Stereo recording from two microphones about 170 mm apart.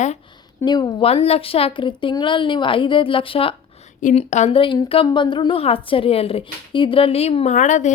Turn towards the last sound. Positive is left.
turn(degrees=45)  # may be behind; listen again after turning